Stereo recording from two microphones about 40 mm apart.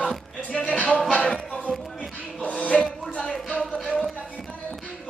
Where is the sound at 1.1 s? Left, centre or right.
Left.